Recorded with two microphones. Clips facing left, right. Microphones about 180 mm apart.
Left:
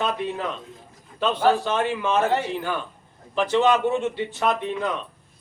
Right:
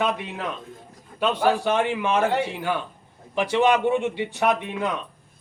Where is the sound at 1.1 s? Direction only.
10° right (ahead or behind).